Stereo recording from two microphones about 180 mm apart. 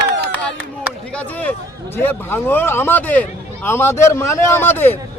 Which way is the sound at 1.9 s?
10° left (ahead or behind).